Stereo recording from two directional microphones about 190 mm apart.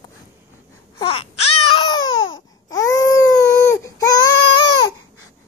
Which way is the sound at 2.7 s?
20° left (ahead or behind).